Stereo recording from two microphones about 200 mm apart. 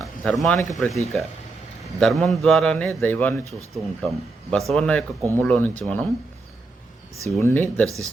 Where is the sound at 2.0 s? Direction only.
Centre (ahead or behind).